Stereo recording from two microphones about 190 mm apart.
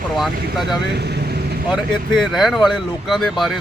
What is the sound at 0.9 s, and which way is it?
Vehicle, 60° right (ahead or behind).